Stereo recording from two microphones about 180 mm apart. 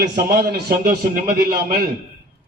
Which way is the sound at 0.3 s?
60° right (ahead or behind).